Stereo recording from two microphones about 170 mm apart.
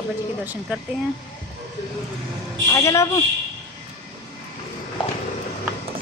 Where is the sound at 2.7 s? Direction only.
15° left (ahead or behind).